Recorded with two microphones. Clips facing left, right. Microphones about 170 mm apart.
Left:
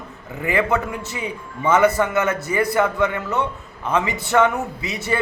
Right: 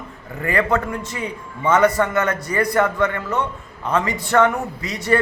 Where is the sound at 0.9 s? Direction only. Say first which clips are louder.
Right 1 dB; 20° left (ahead or behind).